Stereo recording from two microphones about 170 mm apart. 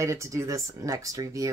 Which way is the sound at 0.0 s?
15° right (ahead or behind).